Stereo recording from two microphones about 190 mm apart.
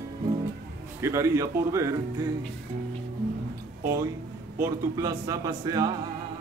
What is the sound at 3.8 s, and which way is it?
A man's voice, 15° right (ahead or behind).